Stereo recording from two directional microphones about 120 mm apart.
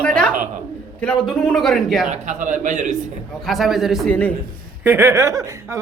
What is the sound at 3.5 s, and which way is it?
Speech, centre (ahead or behind).